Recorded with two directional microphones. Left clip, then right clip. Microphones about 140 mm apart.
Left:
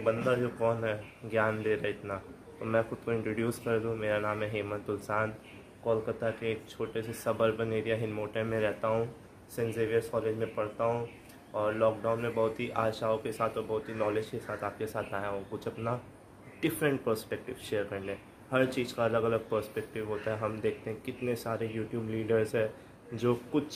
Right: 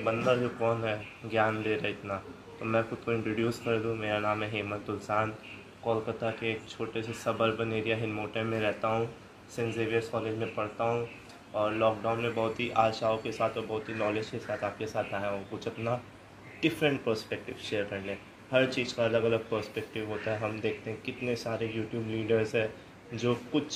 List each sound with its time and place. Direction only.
0.0 s speech: 20° left (ahead or behind)